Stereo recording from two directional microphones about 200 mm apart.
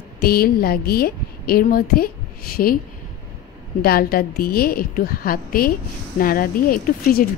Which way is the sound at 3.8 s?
50° left (ahead or behind).